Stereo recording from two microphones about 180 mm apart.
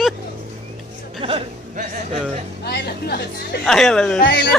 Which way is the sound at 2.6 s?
65° left (ahead or behind).